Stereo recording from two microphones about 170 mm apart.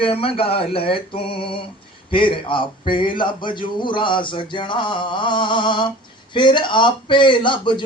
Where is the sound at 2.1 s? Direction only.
30° left (ahead or behind).